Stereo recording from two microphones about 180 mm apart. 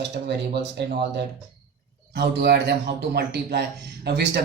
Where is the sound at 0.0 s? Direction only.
75° right (ahead or behind).